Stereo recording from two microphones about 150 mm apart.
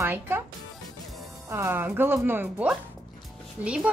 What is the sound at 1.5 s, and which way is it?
Speech, 15° right (ahead or behind).